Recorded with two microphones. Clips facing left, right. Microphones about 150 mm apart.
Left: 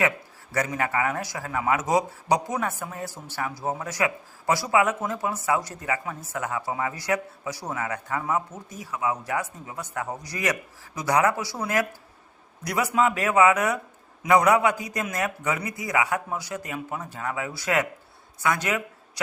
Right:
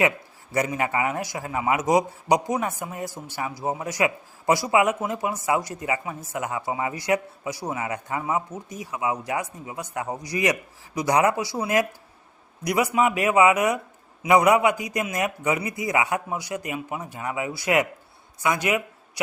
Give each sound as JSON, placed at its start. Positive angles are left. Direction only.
{"t": 0.5, "sound": "a man's voice", "side_deg": -20}